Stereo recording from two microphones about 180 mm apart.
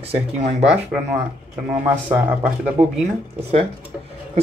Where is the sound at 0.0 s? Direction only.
35° right (ahead or behind).